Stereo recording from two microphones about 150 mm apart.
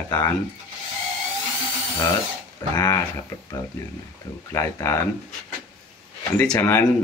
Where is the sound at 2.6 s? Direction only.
30° left (ahead or behind).